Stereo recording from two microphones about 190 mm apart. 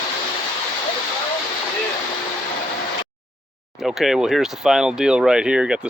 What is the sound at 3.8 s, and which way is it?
Speech, centre (ahead or behind).